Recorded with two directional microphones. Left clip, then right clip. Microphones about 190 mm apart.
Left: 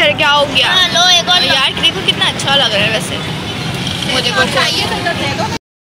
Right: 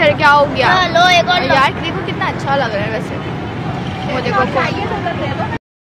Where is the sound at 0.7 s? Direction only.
45° right (ahead or behind).